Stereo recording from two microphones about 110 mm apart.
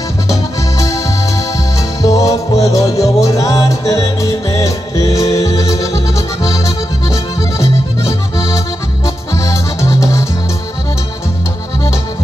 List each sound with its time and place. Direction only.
0.3 s accordion: 30° left (ahead or behind)
3.3 s music: 30° left (ahead or behind)